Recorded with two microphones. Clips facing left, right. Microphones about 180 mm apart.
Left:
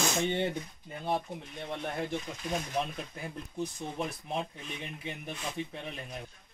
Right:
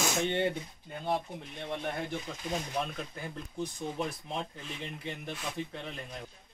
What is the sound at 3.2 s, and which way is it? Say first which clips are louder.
Speech: left 2 dB; centre (ahead or behind).